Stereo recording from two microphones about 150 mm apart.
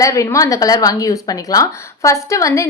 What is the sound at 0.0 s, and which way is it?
A woman's voice, 20° left (ahead or behind).